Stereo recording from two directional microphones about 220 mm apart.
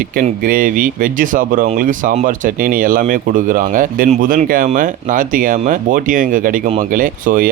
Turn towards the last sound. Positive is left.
turn(degrees=-40)  # may be behind; listen again after turning